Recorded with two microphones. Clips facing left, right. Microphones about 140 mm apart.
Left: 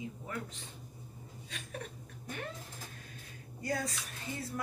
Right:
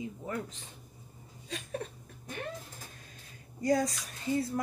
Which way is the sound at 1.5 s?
35° right (ahead or behind).